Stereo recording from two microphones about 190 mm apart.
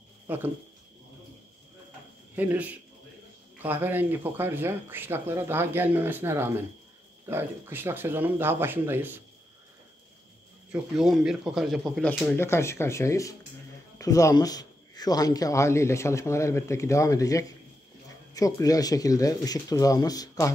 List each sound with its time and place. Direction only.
0.3 s speech: 10° right (ahead or behind)
2.3 s speech: 10° right (ahead or behind)
10.7 s speech: centre (ahead or behind); by 20.5 s 20° left (ahead or behind)